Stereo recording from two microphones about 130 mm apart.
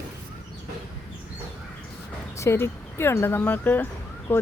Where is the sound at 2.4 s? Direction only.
20° left (ahead or behind).